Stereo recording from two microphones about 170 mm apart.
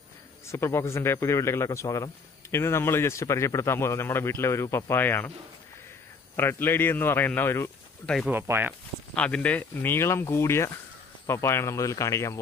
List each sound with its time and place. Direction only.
0.5 s a man's voice: 15° left (ahead or behind)
6.3 s a man's voice: 15° left (ahead or behind)
8.3 s speech: 15° right (ahead or behind)
9.1 s a man's voice: 5° left (ahead or behind)